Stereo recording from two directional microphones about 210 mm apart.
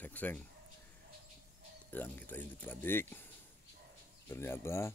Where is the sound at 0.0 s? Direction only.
10° left (ahead or behind).